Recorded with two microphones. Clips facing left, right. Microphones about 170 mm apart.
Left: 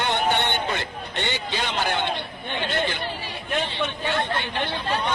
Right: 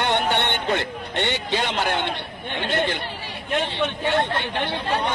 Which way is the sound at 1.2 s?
65° right (ahead or behind).